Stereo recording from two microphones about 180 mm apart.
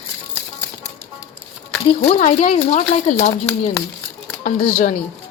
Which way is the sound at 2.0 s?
40° left (ahead or behind).